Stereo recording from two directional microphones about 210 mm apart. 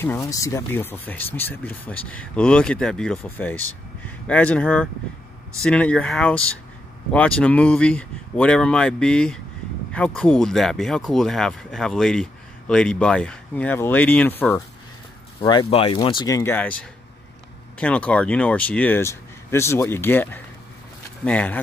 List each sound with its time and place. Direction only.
0.0 s speech: 15° left (ahead or behind)
15.4 s speech: 25° left (ahead or behind)
17.7 s speech: 5° left (ahead or behind)